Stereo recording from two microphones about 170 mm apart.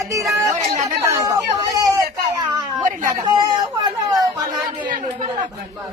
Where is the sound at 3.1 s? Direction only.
25° right (ahead or behind).